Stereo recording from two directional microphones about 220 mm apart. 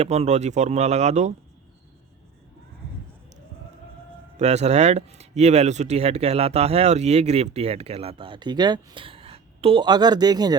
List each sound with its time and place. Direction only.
0.0 s speech: 30° right (ahead or behind)
4.4 s speech: 30° right (ahead or behind)